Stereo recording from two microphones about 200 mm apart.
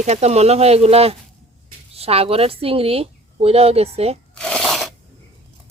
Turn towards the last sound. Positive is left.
turn(degrees=0)  # may be behind; listen again after turning